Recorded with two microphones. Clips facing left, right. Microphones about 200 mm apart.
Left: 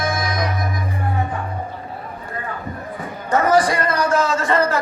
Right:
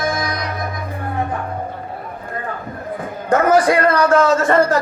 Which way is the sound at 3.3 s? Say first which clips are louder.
Right 3 dB; 55° right (ahead or behind).